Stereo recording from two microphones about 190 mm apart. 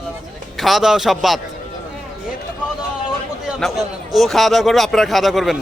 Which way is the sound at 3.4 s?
Centre (ahead or behind).